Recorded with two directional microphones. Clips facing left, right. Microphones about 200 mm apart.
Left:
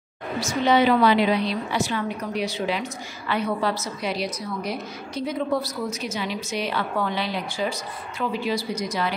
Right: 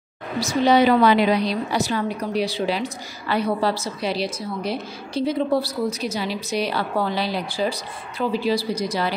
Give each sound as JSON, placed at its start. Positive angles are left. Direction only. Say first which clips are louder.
{"t": 0.4, "sound": "a woman's voice", "louder": "right 3 dB", "side_deg": -35}